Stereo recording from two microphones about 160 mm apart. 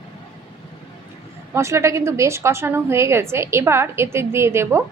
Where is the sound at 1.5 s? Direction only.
15° right (ahead or behind).